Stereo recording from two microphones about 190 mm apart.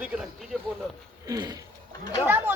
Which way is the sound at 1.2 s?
20° right (ahead or behind).